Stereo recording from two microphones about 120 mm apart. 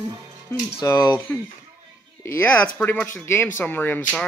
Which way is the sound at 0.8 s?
25° left (ahead or behind).